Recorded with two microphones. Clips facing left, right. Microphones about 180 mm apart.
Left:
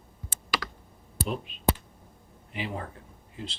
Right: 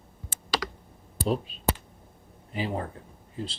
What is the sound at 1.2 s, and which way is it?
Speech, 35° right (ahead or behind).